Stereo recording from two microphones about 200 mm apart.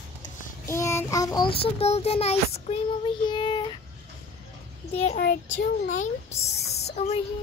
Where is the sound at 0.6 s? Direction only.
15° left (ahead or behind).